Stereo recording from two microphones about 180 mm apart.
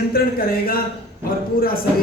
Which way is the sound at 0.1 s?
55° left (ahead or behind).